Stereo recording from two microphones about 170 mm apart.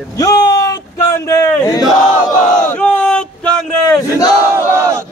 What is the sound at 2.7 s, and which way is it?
A man's voice, 10° left (ahead or behind).